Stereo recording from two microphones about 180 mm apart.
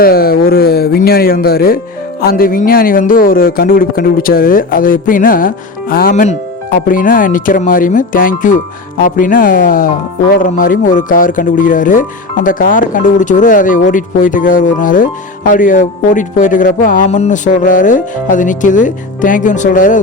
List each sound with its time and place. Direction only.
0.0 s speech: 55° left (ahead or behind)